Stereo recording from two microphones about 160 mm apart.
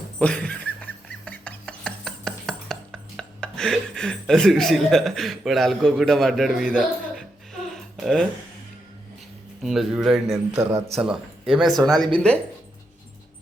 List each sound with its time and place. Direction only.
0.2 s a sound: 10° left (ahead or behind)
7.7 s music: centre (ahead or behind)
9.6 s speech: 5° right (ahead or behind)
10.5 s a man's voice: 15° right (ahead or behind)
11.0 s speech: 5° right (ahead or behind)